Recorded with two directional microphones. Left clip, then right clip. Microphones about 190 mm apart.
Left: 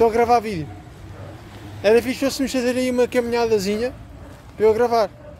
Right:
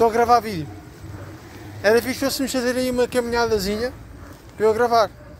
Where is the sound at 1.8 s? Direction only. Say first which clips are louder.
Left 1 dB; 15° left (ahead or behind).